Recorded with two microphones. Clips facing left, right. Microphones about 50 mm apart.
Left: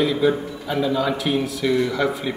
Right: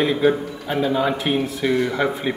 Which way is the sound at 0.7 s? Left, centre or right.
Right.